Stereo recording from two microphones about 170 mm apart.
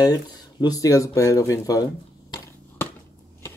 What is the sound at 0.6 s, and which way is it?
Speech, 20° left (ahead or behind).